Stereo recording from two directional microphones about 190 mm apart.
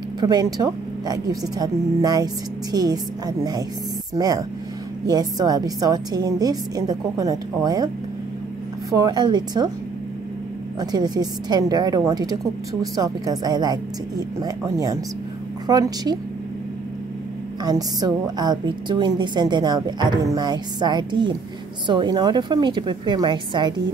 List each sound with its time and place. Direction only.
0.2 s a woman's voice: 20° right (ahead or behind)
8.9 s a woman's voice: 20° right (ahead or behind)
10.8 s a woman's voice: 20° right (ahead or behind)
17.6 s a woman's voice: 20° right (ahead or behind)